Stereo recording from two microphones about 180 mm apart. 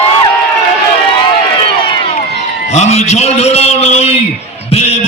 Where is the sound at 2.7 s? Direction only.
40° left (ahead or behind).